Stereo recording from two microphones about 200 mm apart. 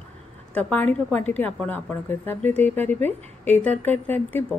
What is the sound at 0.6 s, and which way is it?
A woman's voice, 10° left (ahead or behind).